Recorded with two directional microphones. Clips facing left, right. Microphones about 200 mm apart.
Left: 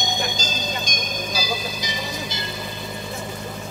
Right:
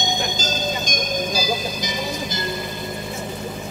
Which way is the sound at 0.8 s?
50° right (ahead or behind).